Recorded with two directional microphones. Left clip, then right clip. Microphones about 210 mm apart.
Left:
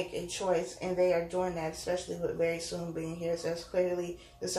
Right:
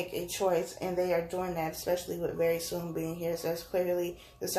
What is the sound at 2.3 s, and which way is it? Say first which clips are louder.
Speech: right 4 dB; 50° right (ahead or behind).